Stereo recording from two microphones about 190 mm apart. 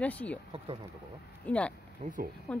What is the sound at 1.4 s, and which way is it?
Speech, 5° left (ahead or behind).